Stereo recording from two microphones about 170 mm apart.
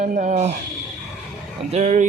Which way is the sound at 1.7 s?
40° right (ahead or behind).